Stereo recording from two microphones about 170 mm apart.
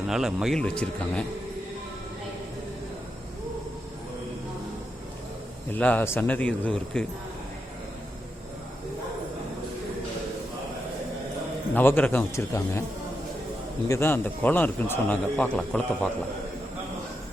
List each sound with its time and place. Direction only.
0.1 s speech: 5° right (ahead or behind)
5.7 s a man's voice: 10° left (ahead or behind)
11.7 s a man's voice: 10° left (ahead or behind)
13.8 s a man's voice: 15° left (ahead or behind)